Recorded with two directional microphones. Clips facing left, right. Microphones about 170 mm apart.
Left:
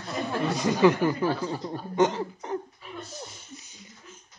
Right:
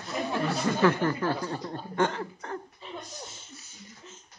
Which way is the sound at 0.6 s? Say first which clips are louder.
Left 4 dB; 15° left (ahead or behind).